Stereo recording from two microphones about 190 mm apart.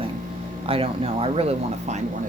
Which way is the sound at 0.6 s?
30° right (ahead or behind).